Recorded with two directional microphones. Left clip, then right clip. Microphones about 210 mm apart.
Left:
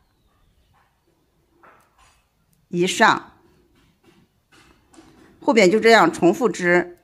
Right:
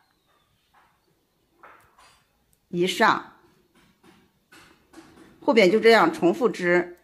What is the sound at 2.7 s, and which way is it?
Speech, 20° left (ahead or behind).